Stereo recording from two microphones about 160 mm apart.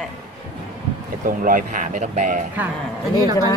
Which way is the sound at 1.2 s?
55° right (ahead or behind).